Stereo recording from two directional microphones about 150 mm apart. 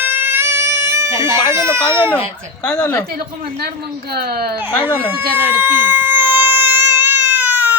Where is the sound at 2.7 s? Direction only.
15° left (ahead or behind).